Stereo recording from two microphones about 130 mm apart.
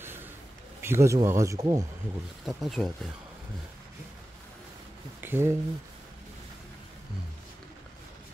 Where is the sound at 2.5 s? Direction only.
Centre (ahead or behind).